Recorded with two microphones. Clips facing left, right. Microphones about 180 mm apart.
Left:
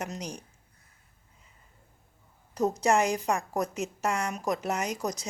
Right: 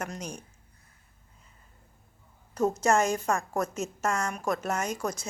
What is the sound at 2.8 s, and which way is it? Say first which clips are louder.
A woman's voice: left 1 dB; 15° left (ahead or behind).